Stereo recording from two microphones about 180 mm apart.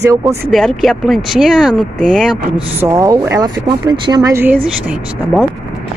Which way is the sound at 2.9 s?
20° right (ahead or behind).